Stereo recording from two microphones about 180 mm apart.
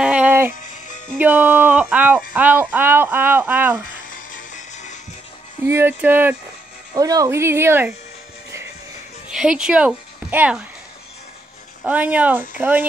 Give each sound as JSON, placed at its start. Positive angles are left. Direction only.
{"t": 0.0, "sound": "music", "side_deg": -10}
{"t": 1.1, "sound": "speech", "side_deg": -10}
{"t": 4.1, "sound": "music", "side_deg": 45}
{"t": 5.7, "sound": "speech", "side_deg": -10}
{"t": 9.3, "sound": "a woman's voice", "side_deg": -5}
{"t": 11.8, "sound": "speech", "side_deg": -10}